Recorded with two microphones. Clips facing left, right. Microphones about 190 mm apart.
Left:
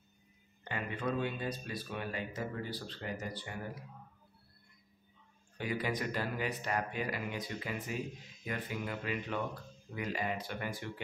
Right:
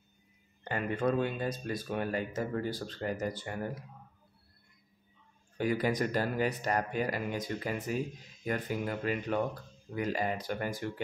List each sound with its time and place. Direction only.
0.7 s speech: 45° right (ahead or behind)
5.6 s speech: 45° right (ahead or behind)